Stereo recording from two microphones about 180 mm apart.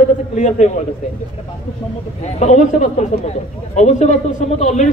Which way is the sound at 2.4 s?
40° left (ahead or behind).